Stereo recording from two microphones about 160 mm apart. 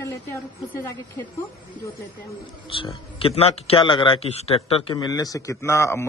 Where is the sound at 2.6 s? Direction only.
35° left (ahead or behind).